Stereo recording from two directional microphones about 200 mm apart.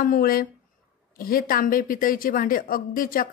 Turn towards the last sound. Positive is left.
turn(degrees=45)  # may be behind; listen again after turning